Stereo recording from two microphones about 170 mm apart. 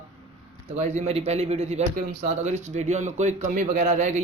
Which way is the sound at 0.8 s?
40° right (ahead or behind).